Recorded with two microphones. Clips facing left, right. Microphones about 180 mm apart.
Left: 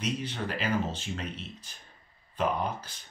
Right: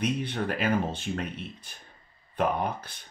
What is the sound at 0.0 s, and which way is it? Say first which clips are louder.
Speech: right 4 dB; 55° right (ahead or behind).